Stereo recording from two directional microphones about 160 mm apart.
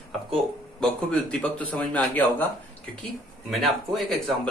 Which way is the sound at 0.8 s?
5° left (ahead or behind).